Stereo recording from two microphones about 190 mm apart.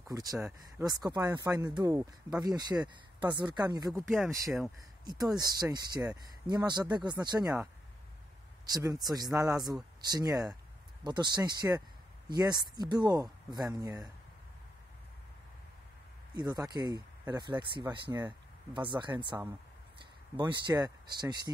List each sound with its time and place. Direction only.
0.1 s speech: 20° right (ahead or behind)
3.9 s speech: centre (ahead or behind)
5.0 s speech: 20° right (ahead or behind)
8.6 s speech: 20° right (ahead or behind)
16.3 s speech: 20° right (ahead or behind)